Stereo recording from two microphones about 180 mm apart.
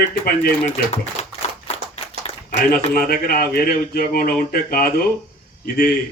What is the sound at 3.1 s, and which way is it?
Speech, 55° left (ahead or behind).